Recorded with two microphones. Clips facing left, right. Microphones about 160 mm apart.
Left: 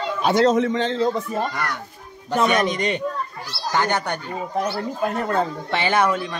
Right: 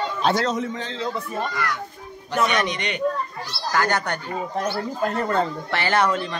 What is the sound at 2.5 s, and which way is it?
Speech, 40° left (ahead or behind).